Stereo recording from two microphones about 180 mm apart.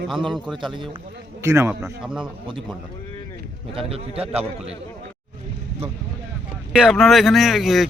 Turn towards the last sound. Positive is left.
turn(degrees=0)  # may be behind; listen again after turning